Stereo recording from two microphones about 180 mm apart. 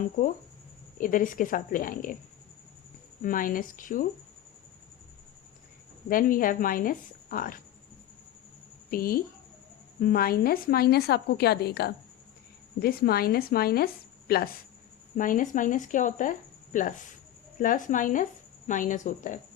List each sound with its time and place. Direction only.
0.0 s speech: 45° left (ahead or behind)
3.2 s speech: 50° left (ahead or behind)
6.1 s speech: 50° left (ahead or behind)
8.9 s a woman's voice: 55° left (ahead or behind)